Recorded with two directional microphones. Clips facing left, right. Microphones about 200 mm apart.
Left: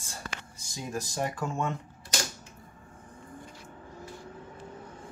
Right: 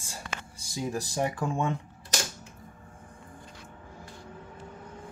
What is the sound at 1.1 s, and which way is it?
Speech, 15° right (ahead or behind).